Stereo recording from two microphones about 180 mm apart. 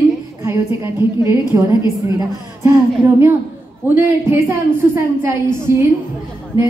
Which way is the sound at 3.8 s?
10° right (ahead or behind).